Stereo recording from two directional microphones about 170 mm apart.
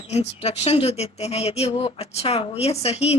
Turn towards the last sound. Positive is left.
turn(degrees=35)  # may be behind; listen again after turning